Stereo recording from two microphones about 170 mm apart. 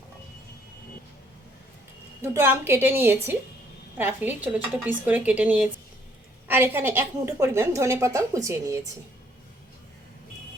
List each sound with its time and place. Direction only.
2.2 s a woman's voice: 15° right (ahead or behind)